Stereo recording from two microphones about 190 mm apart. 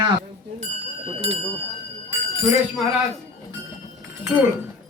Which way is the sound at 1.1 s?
30° right (ahead or behind).